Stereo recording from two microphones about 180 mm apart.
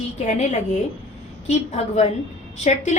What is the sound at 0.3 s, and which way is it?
A woman's voice, 40° left (ahead or behind).